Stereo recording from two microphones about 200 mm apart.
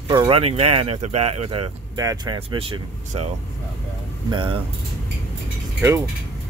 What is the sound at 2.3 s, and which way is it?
Speech, 30° right (ahead or behind).